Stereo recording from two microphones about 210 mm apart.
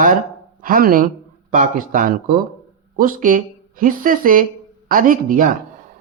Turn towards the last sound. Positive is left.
turn(degrees=-40)  # may be behind; listen again after turning